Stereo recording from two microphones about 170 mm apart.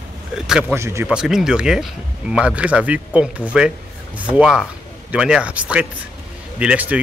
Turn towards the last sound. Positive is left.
turn(degrees=-5)  # may be behind; listen again after turning